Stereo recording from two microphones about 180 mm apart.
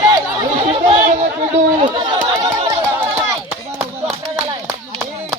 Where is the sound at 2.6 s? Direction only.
15° right (ahead or behind).